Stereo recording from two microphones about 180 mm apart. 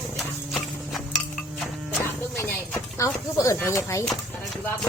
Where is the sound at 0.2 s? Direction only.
Centre (ahead or behind).